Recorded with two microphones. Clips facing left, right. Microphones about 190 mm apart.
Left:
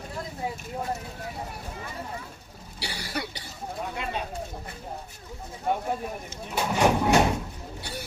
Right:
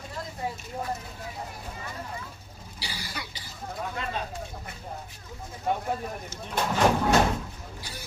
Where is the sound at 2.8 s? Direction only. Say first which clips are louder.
Left 6 dB; 65° left (ahead or behind).